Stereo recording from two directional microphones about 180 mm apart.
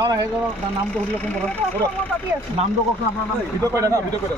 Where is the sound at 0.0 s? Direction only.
20° right (ahead or behind).